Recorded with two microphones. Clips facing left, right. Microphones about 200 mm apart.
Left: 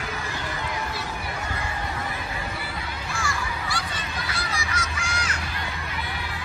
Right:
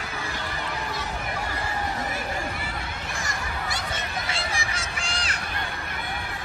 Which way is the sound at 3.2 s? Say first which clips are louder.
Left 3 dB; 20° right (ahead or behind).